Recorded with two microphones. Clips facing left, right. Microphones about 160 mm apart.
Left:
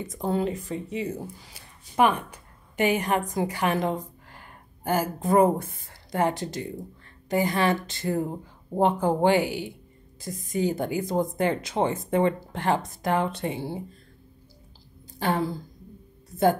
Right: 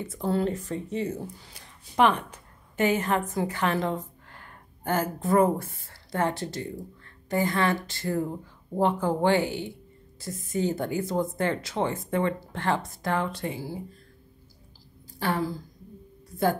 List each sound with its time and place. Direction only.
0.0 s speech: 15° left (ahead or behind)
15.1 s speech: 20° left (ahead or behind)